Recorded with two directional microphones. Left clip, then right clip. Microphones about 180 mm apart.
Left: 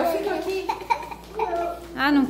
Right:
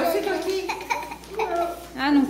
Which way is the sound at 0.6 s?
15° right (ahead or behind).